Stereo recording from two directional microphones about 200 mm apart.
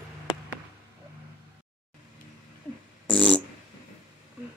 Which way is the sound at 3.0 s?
5° left (ahead or behind).